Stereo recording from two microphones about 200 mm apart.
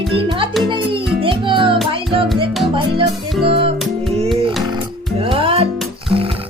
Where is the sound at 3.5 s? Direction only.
30° right (ahead or behind).